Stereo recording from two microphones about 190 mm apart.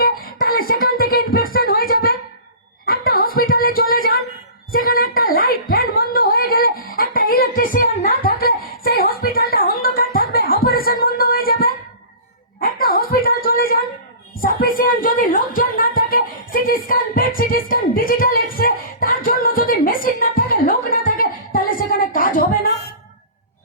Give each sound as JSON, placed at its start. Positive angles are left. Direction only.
{"t": 0.0, "sound": "music", "side_deg": 50}
{"t": 2.8, "sound": "a sound", "side_deg": 50}
{"t": 14.4, "sound": "music", "side_deg": 50}